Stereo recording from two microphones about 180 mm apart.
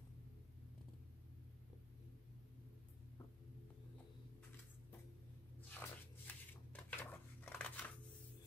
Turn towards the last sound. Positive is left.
turn(degrees=10)  # may be behind; listen again after turning